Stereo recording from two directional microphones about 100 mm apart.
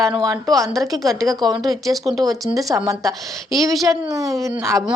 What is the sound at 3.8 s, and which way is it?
Speech, 35° right (ahead or behind).